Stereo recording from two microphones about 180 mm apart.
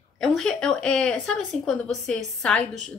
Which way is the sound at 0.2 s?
5° left (ahead or behind).